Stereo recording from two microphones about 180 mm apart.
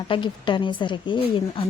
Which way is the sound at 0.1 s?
25° left (ahead or behind).